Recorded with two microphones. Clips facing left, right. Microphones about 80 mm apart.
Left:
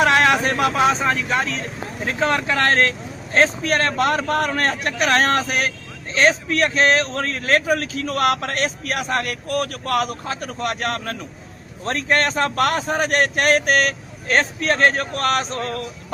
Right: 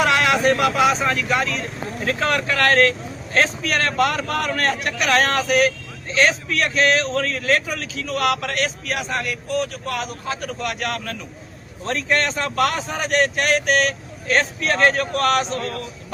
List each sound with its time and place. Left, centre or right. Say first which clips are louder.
0.0 s speech: left 1 dB; left
2.0 s a man's voice: left 1 dB; left